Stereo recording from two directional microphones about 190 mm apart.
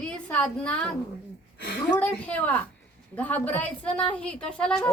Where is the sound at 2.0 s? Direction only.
10° left (ahead or behind).